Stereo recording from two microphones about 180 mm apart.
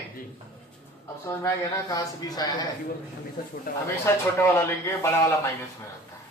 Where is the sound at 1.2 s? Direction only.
20° left (ahead or behind).